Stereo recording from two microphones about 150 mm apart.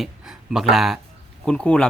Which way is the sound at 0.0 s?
Centre (ahead or behind).